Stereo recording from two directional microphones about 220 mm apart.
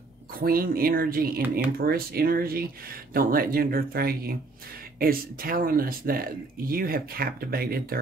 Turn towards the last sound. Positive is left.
turn(degrees=-40)  # may be behind; listen again after turning